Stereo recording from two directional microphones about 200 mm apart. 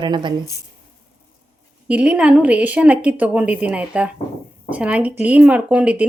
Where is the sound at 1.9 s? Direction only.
5° right (ahead or behind).